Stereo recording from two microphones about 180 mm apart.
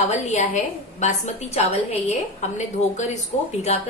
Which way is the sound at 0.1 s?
40° left (ahead or behind).